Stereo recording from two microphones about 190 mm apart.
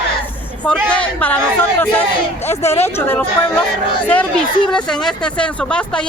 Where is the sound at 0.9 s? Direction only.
10° left (ahead or behind).